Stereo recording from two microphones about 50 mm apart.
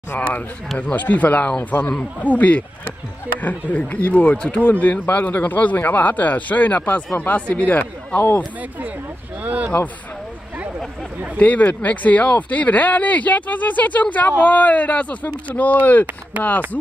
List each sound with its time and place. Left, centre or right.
0.1 s speech: left
9.4 s speech: right
11.3 s speech: left
16.3 s speech: right